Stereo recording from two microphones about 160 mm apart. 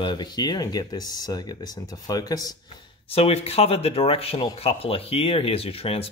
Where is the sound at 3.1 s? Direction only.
40° left (ahead or behind).